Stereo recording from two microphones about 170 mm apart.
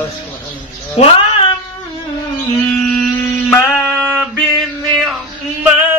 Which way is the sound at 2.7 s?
5° left (ahead or behind).